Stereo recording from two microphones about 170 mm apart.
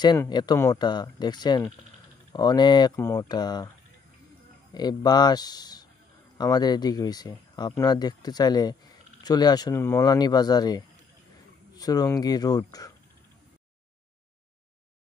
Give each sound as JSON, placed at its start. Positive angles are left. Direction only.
{"t": 0.0, "sound": "speech", "side_deg": 25}
{"t": 4.7, "sound": "speech", "side_deg": 25}